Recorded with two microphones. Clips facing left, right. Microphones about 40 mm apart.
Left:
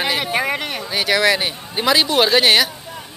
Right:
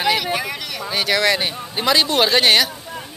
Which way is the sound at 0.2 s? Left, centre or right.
Left.